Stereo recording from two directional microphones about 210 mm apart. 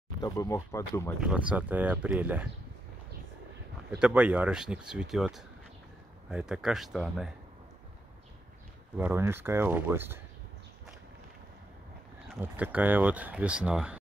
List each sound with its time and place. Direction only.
0.2 s speech: 15° left (ahead or behind)
1.2 s speech: 5° right (ahead or behind)
3.9 s speech: 5° right (ahead or behind)
8.9 s speech: 10° right (ahead or behind)
12.3 s speech: 5° right (ahead or behind)